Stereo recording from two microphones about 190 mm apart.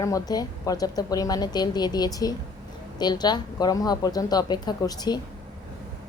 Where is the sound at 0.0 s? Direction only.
20° left (ahead or behind).